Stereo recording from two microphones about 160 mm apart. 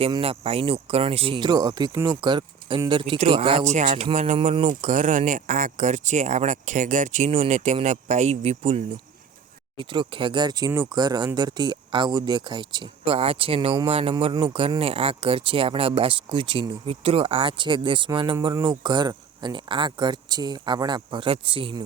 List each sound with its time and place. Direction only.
0.1 s speech: 35° right (ahead or behind)
4.6 s speech: 50° right (ahead or behind); by 21.8 s 35° right (ahead or behind)